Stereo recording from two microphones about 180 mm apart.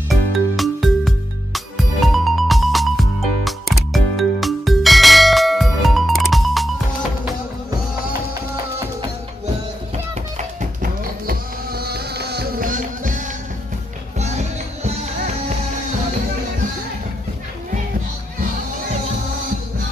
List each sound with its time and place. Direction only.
0.1 s music: centre (ahead or behind)
10.3 s music: 45° right (ahead or behind)